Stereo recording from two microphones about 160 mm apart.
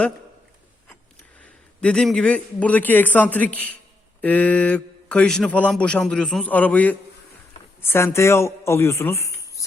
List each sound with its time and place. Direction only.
1.4 s a man's voice: 5° left (ahead or behind)